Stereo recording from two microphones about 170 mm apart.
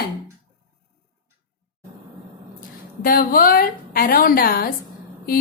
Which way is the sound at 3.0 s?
55° left (ahead or behind).